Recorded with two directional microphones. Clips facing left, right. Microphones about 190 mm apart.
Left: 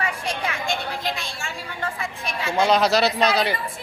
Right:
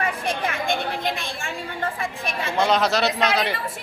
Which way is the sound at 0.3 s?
55° right (ahead or behind).